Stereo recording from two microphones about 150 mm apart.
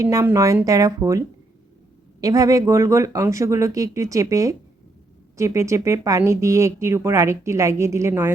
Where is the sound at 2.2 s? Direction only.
25° right (ahead or behind).